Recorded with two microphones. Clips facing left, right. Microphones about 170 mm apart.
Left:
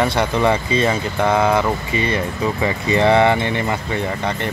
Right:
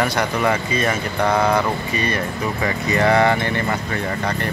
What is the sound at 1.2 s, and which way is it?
Speech, 5° left (ahead or behind).